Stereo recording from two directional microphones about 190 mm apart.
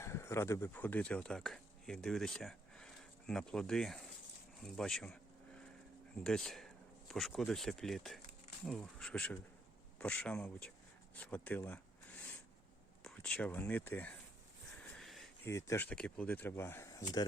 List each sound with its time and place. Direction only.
0.0 s speech: 15° left (ahead or behind)
6.2 s speech: 5° left (ahead or behind)
13.1 s speech: 5° left (ahead or behind)
14.9 s a sound: centre (ahead or behind)
15.4 s speech: 15° left (ahead or behind)